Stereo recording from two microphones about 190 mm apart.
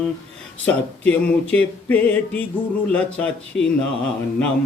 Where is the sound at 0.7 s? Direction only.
5° left (ahead or behind).